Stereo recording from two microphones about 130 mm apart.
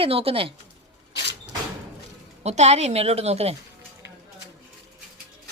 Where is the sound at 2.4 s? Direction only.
55° right (ahead or behind).